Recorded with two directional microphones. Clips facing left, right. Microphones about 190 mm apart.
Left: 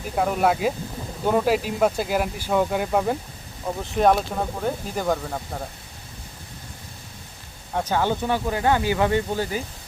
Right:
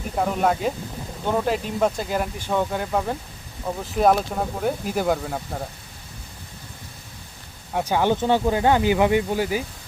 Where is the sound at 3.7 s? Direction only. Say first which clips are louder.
Even; centre (ahead or behind).